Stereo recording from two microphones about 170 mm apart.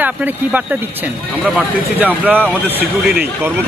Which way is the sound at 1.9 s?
10° right (ahead or behind).